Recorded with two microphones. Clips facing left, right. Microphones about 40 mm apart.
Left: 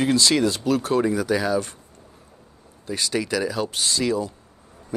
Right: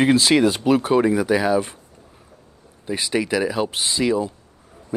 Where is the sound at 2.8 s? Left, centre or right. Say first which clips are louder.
Right 3 dB; centre.